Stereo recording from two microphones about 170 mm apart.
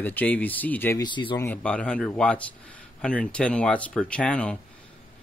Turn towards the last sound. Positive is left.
turn(degrees=5)  # may be behind; listen again after turning